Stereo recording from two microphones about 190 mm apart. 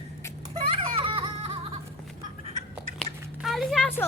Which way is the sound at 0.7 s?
30° right (ahead or behind).